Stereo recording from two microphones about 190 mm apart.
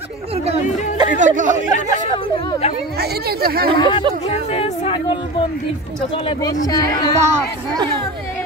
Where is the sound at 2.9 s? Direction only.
55° right (ahead or behind).